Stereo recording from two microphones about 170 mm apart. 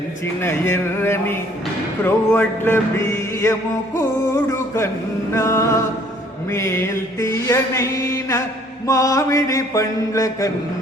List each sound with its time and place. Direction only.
0.4 s mantra: 15° left (ahead or behind)
5.3 s mantra: 15° left (ahead or behind)